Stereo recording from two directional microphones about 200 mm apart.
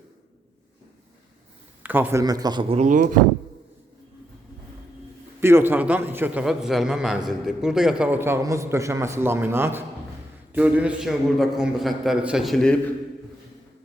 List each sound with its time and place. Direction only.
1.8 s speech: 10° right (ahead or behind); by 3.2 s 40° right (ahead or behind)
5.4 s a man's voice: 10° right (ahead or behind)